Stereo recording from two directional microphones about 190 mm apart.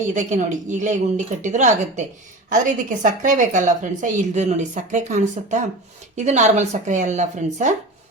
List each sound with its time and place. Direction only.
0.0 s a woman's voice: 40° right (ahead or behind)